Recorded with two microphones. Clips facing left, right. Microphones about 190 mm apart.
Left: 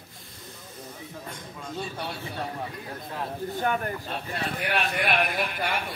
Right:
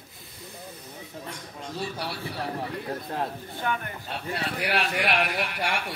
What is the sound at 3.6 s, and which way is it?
Speech, 40° left (ahead or behind).